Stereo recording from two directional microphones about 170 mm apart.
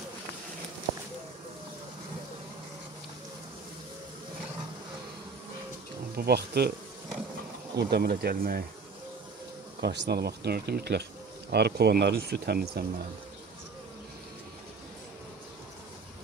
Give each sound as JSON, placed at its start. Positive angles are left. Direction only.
{"t": 6.1, "sound": "speech", "side_deg": -70}
{"t": 7.7, "sound": "speech", "side_deg": -65}
{"t": 9.8, "sound": "speech", "side_deg": -75}